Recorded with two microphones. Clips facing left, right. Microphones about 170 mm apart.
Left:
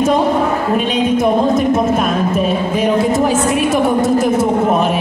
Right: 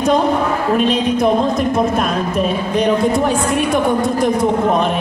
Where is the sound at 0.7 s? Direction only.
Centre (ahead or behind).